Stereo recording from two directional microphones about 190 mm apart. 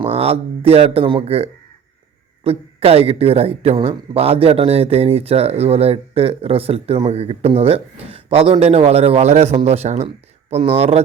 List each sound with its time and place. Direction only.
0.0 s speech: 30° right (ahead or behind)